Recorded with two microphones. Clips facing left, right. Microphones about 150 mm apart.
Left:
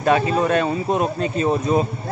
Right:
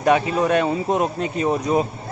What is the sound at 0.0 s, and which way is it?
Speech, 15° right (ahead or behind).